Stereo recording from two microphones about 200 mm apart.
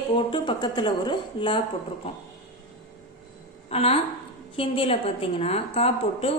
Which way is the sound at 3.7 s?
30° left (ahead or behind).